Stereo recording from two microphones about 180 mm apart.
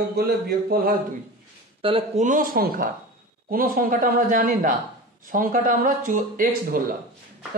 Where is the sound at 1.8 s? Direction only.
30° right (ahead or behind).